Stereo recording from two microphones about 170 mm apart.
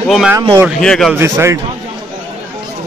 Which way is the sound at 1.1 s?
15° right (ahead or behind).